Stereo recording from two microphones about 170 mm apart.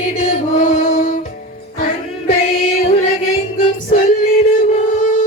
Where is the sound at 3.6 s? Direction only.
50° left (ahead or behind).